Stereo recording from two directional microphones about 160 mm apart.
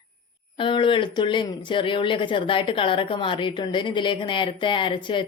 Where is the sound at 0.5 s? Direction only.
30° left (ahead or behind).